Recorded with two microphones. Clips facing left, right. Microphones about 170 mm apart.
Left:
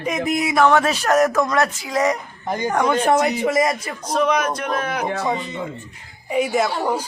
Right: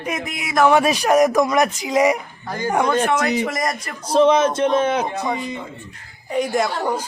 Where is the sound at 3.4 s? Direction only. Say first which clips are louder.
Left 5 dB; 5° left (ahead or behind).